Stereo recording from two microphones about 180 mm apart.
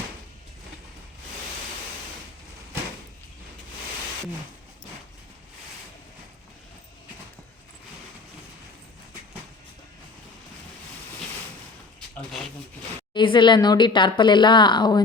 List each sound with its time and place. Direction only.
13.1 s speech: 25° left (ahead or behind)